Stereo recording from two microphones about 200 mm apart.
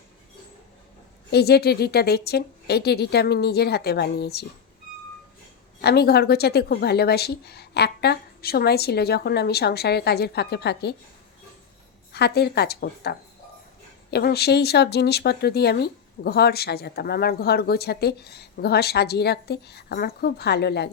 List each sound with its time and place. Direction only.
1.3 s speech: 55° left (ahead or behind)
5.8 s speech: 55° left (ahead or behind)
12.1 s speech: 55° left (ahead or behind)